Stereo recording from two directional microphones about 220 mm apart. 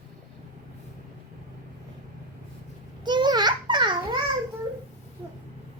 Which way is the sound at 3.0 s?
20° right (ahead or behind).